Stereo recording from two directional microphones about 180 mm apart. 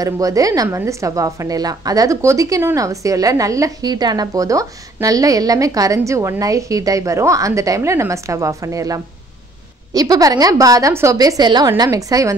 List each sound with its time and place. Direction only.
0.0 s a woman's voice: 20° right (ahead or behind)